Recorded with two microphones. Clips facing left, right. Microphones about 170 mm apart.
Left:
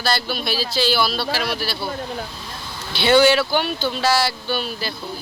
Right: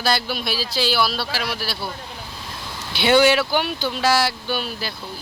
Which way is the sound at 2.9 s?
15° right (ahead or behind).